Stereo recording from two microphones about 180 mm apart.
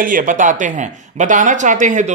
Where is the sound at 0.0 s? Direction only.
50° right (ahead or behind).